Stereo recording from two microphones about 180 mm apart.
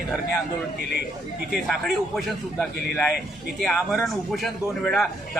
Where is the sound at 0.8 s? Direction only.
65° left (ahead or behind).